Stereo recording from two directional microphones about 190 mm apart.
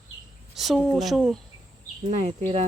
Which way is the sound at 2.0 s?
35° right (ahead or behind).